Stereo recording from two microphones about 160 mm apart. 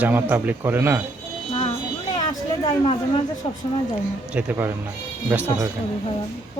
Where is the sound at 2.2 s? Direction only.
30° left (ahead or behind).